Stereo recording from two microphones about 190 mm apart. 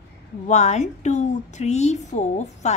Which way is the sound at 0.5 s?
35° left (ahead or behind).